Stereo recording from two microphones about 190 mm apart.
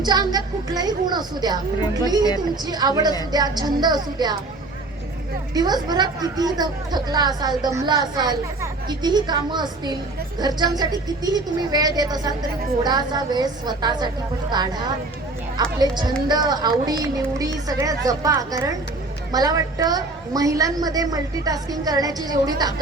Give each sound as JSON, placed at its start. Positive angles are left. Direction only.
{"t": 0.0, "sound": "a woman's voice", "side_deg": -20}
{"t": 2.6, "sound": "a woman's voice", "side_deg": -20}
{"t": 5.5, "sound": "a woman's voice", "side_deg": -20}
{"t": 15.8, "sound": "a woman's voice", "side_deg": -20}